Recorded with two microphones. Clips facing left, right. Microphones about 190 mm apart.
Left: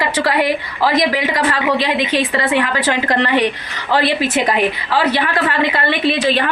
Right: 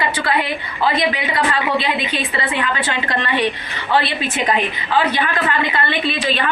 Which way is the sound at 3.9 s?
80° left.